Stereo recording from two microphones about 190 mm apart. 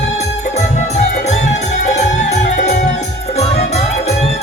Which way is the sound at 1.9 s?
35° left (ahead or behind).